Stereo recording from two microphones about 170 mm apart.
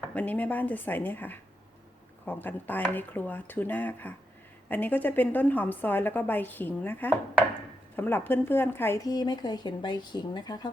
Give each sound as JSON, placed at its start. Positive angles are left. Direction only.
{"t": 0.1, "sound": "a woman's voice", "side_deg": 10}